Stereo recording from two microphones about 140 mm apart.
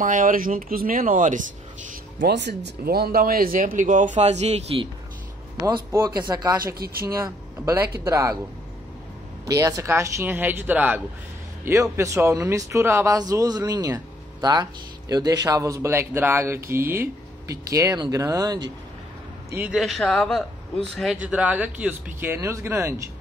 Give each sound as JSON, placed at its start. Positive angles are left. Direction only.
{"t": 0.0, "sound": "speech", "side_deg": -75}
{"t": 2.8, "sound": "speech", "side_deg": -90}
{"t": 5.9, "sound": "speech", "side_deg": -20}
{"t": 6.6, "sound": "speech", "side_deg": -90}
{"t": 7.6, "sound": "speech", "side_deg": -20}
{"t": 9.5, "sound": "speech", "side_deg": -25}
{"t": 19.5, "sound": "a man's voice", "side_deg": -5}